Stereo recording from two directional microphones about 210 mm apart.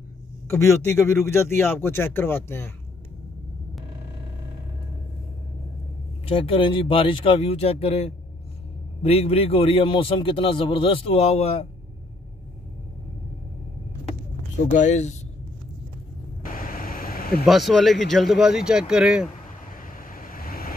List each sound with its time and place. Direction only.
0.5 s a man's voice: 10° left (ahead or behind)
6.2 s a man's voice: 25° left (ahead or behind)
14.7 s speech: 35° left (ahead or behind)
16.4 s vehicle: 40° left (ahead or behind)
17.5 s speech: centre (ahead or behind)
19.8 s vehicle: 40° left (ahead or behind)